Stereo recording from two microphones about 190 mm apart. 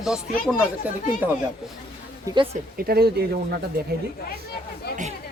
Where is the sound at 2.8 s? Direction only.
55° right (ahead or behind).